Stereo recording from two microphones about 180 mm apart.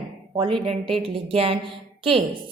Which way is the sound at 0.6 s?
35° right (ahead or behind).